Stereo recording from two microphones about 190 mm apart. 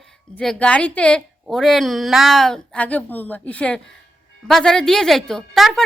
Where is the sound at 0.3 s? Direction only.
5° left (ahead or behind).